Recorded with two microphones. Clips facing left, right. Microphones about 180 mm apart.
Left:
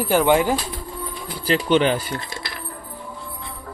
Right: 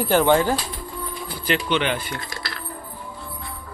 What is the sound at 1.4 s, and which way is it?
Speech, 35° left (ahead or behind).